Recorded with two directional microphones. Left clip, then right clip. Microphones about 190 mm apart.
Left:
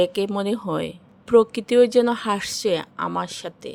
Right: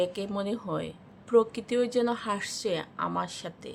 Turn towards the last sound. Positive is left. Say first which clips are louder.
# left 5 dB
turn(degrees=40)  # may be behind; listen again after turning